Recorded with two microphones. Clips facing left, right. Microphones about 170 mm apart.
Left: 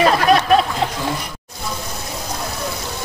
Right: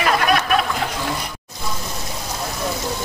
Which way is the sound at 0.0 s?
30° left (ahead or behind).